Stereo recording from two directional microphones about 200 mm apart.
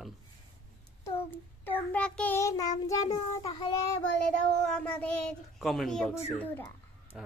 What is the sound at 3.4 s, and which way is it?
Speech, 25° left (ahead or behind).